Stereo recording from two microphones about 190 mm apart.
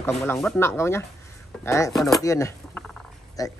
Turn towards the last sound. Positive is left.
turn(degrees=20)  # may be behind; listen again after turning